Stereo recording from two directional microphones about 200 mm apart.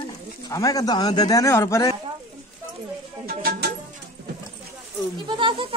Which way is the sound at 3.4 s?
50° right (ahead or behind).